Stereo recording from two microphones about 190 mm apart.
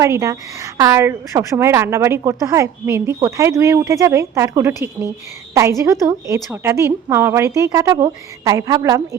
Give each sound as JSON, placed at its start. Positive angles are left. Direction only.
{"t": 0.0, "sound": "a woman's voice", "side_deg": -15}